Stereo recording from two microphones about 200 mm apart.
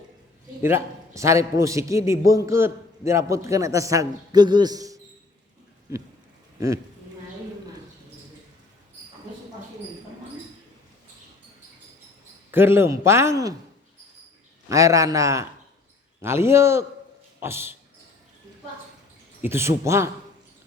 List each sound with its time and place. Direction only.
0.6 s a man's voice: 15° right (ahead or behind)
12.5 s a man's voice: 10° right (ahead or behind)
14.7 s a man's voice: 15° right (ahead or behind)
19.4 s a man's voice: 10° right (ahead or behind)